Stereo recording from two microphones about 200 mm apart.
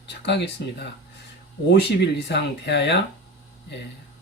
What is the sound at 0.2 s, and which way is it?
Speech, 60° left (ahead or behind).